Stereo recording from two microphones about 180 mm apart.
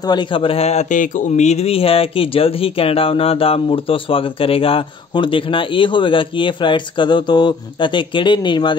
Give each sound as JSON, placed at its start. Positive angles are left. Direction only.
{"t": 0.0, "sound": "speech", "side_deg": 25}